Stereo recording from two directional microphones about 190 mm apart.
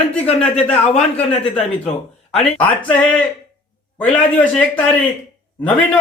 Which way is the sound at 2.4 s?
5° left (ahead or behind).